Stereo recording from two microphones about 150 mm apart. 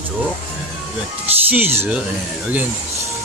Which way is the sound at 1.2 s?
10° right (ahead or behind).